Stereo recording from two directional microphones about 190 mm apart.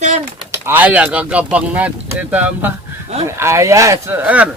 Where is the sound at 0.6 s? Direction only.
10° right (ahead or behind).